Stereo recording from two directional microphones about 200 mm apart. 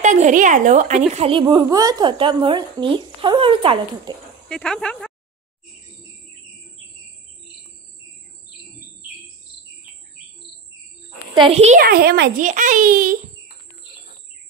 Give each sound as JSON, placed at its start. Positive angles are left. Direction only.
{"t": 0.0, "sound": "a woman's voice", "side_deg": -35}
{"t": 1.4, "sound": "a woman's voice", "side_deg": -20}
{"t": 4.5, "sound": "speech", "side_deg": 5}
{"t": 11.3, "sound": "a woman's voice", "side_deg": -30}
{"t": 11.8, "sound": "a child's voice", "side_deg": -50}